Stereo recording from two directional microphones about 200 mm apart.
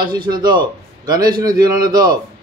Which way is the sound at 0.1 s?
20° right (ahead or behind).